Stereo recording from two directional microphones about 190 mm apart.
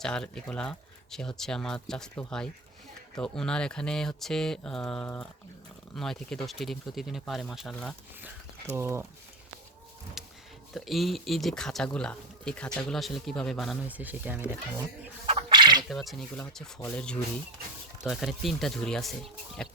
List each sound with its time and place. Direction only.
0.0 s speech: 5° left (ahead or behind)
8.2 s speech: 10° right (ahead or behind)
10.2 s a sound: centre (ahead or behind)
10.8 s speech: centre (ahead or behind)
15.3 s a sound: 25° right (ahead or behind)
15.8 s speech: centre (ahead or behind)